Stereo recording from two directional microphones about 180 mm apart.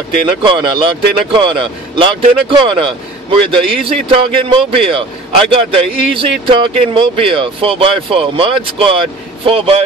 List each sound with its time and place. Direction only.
0.4 s a man's voice: 25° right (ahead or behind)